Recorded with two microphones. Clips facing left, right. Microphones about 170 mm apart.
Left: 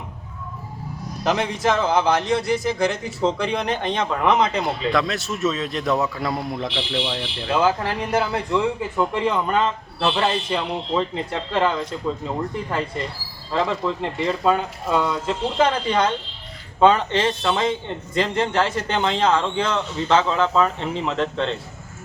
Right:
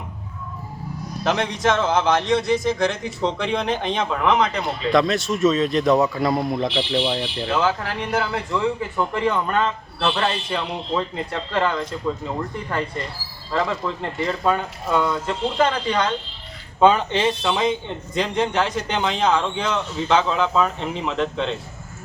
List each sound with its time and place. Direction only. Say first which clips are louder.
1.2 s speech: even; centre (ahead or behind)
4.2 s speech: left 1 dB; 10° left (ahead or behind)
6.7 s speech: right 4 dB; 15° right (ahead or behind)
7.5 s speech: left 3 dB; 5° left (ahead or behind)
9.3 s speech: left 1 dB; centre (ahead or behind)
10.2 s speech: left 2 dB; 10° left (ahead or behind)
10.9 s speech: left 1 dB; centre (ahead or behind)